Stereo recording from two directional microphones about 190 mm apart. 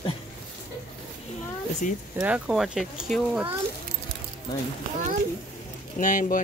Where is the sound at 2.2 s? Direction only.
5° right (ahead or behind).